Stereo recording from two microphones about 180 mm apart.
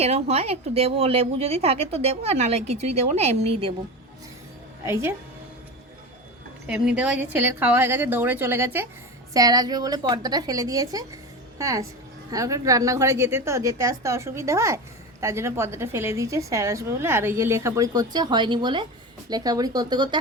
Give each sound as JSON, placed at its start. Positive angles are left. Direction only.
{"t": 0.0, "sound": "a woman's voice", "side_deg": -35}
{"t": 4.9, "sound": "a woman's voice", "side_deg": -15}
{"t": 6.7, "sound": "a woman's voice", "side_deg": -5}